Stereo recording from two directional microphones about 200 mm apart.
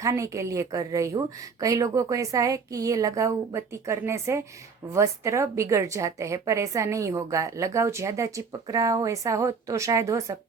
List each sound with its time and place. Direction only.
0.0 s a woman's voice: 15° right (ahead or behind)